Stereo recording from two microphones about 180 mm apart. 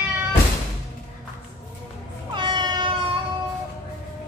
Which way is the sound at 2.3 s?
25° right (ahead or behind).